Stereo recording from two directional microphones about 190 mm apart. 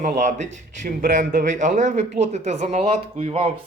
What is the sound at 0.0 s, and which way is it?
Speech, 40° right (ahead or behind).